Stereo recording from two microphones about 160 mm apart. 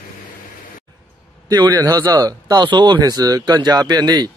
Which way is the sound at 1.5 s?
25° right (ahead or behind).